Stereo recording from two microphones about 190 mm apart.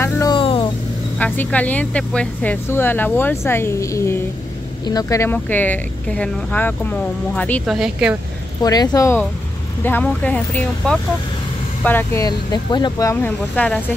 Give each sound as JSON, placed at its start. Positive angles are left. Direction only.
{"t": 0.0, "sound": "vehicle", "side_deg": 20}
{"t": 1.1, "sound": "speech", "side_deg": 10}
{"t": 8.6, "sound": "speech", "side_deg": 20}